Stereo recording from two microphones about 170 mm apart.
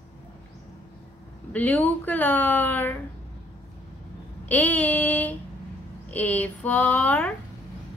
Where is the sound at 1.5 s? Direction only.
10° left (ahead or behind).